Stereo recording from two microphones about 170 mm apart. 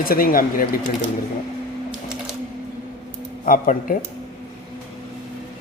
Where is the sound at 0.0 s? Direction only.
60° left (ahead or behind).